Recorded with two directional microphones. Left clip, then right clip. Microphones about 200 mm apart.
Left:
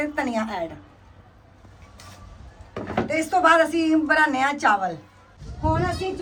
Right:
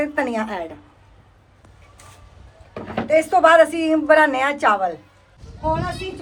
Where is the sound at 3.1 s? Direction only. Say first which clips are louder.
Right 5 dB; 25° right (ahead or behind).